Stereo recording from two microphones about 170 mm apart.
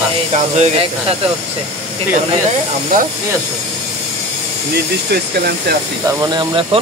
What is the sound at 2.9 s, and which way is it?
Speech, 55° right (ahead or behind).